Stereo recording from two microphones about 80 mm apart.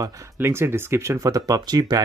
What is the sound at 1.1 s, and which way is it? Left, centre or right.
Speech, right.